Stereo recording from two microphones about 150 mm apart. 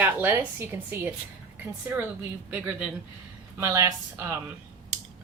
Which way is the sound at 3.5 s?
20° right (ahead or behind).